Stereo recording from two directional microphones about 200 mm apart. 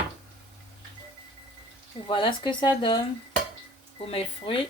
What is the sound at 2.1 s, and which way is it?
Speech, 25° left (ahead or behind).